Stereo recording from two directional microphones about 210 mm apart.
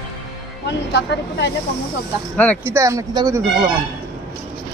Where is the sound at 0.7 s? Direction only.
55° left (ahead or behind).